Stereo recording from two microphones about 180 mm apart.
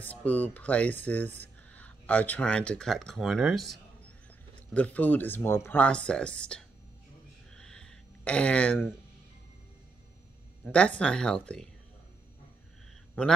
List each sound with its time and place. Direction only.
0.0 s speech: 10° left (ahead or behind)
7.5 s a sound: 5° left (ahead or behind)
10.6 s speech: 5° left (ahead or behind)
13.2 s speech: 10° left (ahead or behind)